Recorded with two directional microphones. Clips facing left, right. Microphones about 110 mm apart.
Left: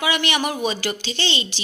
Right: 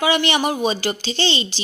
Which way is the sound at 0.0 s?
30° right (ahead or behind).